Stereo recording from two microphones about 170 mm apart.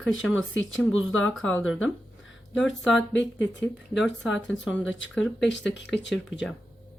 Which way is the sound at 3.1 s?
90° left.